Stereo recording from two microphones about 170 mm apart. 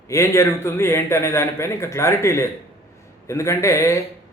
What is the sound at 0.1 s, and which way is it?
Speech, 15° left (ahead or behind).